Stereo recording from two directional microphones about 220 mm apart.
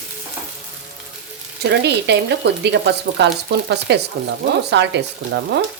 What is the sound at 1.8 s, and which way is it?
A woman's voice, 50° right (ahead or behind).